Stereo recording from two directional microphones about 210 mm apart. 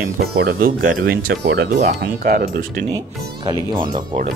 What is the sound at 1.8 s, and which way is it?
Speech, 40° right (ahead or behind).